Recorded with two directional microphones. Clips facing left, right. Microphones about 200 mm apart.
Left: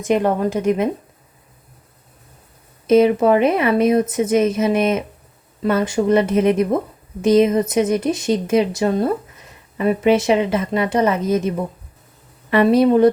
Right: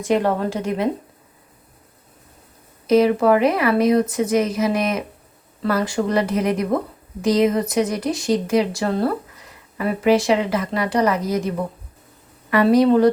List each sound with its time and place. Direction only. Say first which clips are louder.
0.0 s a woman's voice: left 2 dB; 20° left (ahead or behind)
2.8 s speech: left 2 dB; 25° left (ahead or behind)